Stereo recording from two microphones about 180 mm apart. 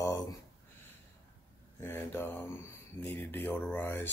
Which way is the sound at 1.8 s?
10° left (ahead or behind).